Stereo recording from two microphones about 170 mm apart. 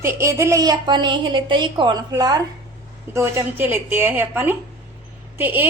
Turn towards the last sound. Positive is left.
turn(degrees=-10)  # may be behind; listen again after turning